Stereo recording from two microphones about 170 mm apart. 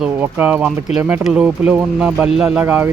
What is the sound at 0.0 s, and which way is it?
Speech, 10° right (ahead or behind).